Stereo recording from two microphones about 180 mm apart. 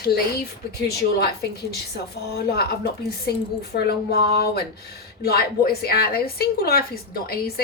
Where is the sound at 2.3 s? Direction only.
65° left (ahead or behind).